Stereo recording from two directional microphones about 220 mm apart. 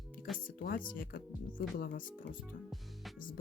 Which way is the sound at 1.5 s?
40° left (ahead or behind).